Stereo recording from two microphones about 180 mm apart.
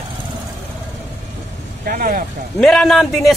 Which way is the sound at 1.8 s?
50° right (ahead or behind).